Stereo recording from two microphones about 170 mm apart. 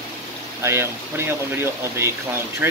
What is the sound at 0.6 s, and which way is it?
Speech, 15° right (ahead or behind).